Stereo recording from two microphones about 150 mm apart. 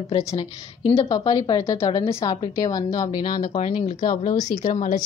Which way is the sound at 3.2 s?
60° left (ahead or behind).